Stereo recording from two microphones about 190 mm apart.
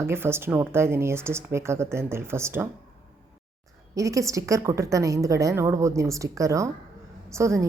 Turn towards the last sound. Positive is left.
turn(degrees=-15)  # may be behind; listen again after turning